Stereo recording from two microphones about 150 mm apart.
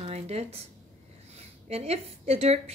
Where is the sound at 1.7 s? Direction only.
45° right (ahead or behind).